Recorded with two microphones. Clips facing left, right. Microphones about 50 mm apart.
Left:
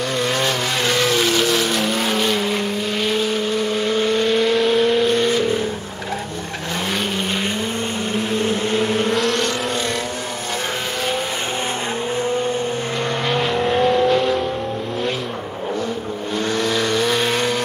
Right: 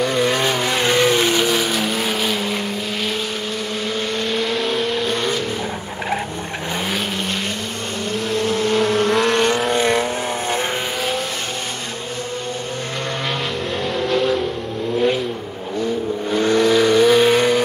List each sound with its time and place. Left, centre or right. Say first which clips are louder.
0.0 s vehicle: right 2 dB; centre
3.9 s vehicle: left 5 dB; centre
8.3 s vehicle: right 3 dB; centre
9.8 s vehicle: right 6 dB; right
13.7 s vehicle: left 6 dB; centre
16.3 s vehicle: right 6 dB; centre